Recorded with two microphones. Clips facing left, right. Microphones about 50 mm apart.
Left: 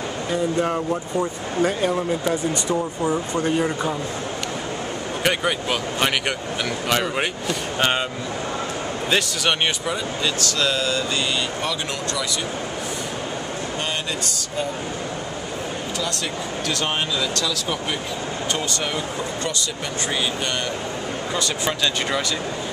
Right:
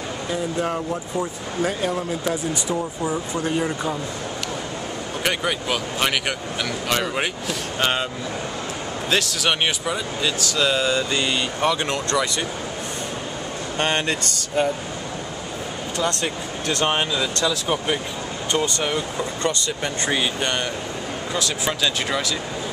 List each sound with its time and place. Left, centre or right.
0.3 s speech: centre
1.7 s speech: centre
2.7 s speech: centre
5.2 s speech: centre
9.1 s speech: centre
10.7 s speech: right
13.7 s speech: right
16.6 s speech: right
21.4 s speech: centre